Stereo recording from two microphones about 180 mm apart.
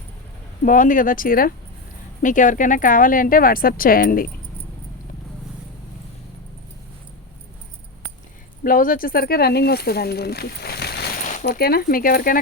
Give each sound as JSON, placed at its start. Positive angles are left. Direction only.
{"t": 0.6, "sound": "speech", "side_deg": 45}
{"t": 8.6, "sound": "speech", "side_deg": 50}